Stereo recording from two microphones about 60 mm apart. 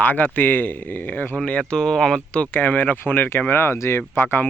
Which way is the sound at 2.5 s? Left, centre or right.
Left.